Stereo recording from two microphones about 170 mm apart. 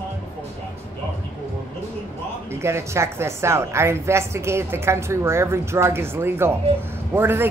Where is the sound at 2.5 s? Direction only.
15° right (ahead or behind).